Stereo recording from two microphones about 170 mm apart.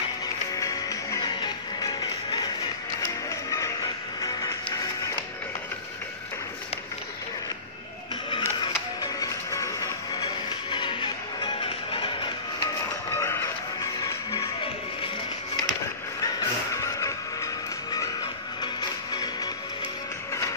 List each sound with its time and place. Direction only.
0.6 s music: 20° left (ahead or behind)
8.3 s music: 30° left (ahead or behind)
13.2 s music: 15° left (ahead or behind)
16.3 s music: 20° left (ahead or behind)
18.6 s music: 25° left (ahead or behind)